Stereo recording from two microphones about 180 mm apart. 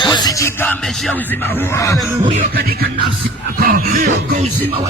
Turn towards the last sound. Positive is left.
turn(degrees=-55)  # may be behind; listen again after turning